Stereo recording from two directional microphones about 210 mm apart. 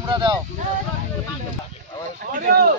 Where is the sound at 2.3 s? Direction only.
40° right (ahead or behind).